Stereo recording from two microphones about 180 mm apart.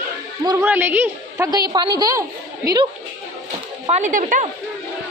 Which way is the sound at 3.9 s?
40° right (ahead or behind).